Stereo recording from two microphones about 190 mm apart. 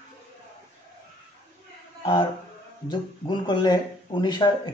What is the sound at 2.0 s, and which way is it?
Speech, 25° left (ahead or behind).